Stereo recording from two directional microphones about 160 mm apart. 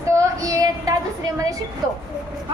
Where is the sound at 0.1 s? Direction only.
20° right (ahead or behind).